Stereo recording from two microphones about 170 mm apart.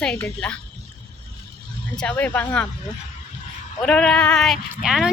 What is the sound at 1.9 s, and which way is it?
Speech, 5° left (ahead or behind).